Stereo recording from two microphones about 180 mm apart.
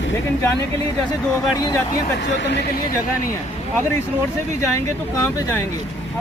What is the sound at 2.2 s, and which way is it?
Speech, 80° left.